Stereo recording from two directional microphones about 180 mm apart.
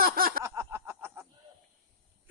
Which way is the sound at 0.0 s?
55° right (ahead or behind).